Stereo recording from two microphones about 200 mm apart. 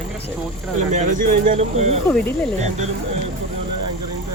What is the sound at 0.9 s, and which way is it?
Speech, 40° right (ahead or behind).